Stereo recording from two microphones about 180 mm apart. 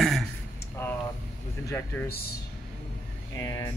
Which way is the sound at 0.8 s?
10° left (ahead or behind).